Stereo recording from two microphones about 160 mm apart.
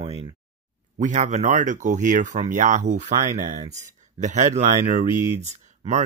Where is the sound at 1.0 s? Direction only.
50° right (ahead or behind).